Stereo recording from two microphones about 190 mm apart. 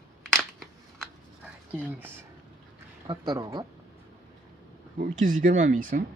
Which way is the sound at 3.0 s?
20° right (ahead or behind).